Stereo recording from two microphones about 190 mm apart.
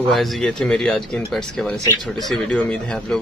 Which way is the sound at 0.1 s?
Centre (ahead or behind).